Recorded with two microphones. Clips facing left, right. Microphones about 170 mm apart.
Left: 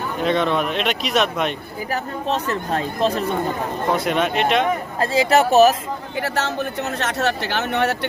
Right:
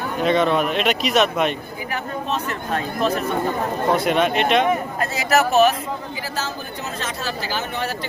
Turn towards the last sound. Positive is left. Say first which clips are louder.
# left 5 dB
turn(degrees=70)  # may be behind; listen again after turning